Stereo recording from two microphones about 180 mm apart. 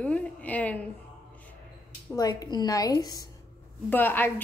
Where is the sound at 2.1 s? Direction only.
20° left (ahead or behind).